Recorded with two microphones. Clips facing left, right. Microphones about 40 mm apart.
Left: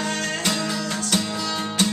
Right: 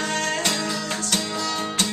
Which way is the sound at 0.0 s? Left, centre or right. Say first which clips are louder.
Right 1 dB; centre.